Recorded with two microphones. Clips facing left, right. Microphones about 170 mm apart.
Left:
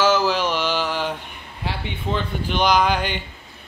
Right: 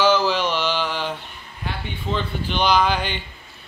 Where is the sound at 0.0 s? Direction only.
5° left (ahead or behind).